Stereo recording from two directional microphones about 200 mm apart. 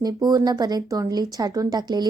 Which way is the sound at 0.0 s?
20° right (ahead or behind).